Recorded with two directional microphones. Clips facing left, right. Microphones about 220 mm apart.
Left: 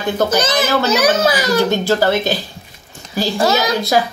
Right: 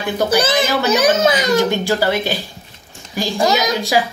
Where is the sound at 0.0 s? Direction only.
10° right (ahead or behind).